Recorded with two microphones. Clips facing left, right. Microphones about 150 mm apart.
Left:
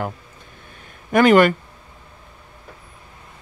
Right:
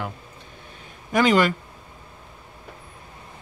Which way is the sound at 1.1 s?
55° left (ahead or behind).